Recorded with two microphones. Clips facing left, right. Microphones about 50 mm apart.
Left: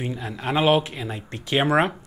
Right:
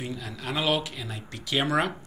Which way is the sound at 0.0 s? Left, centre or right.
Left.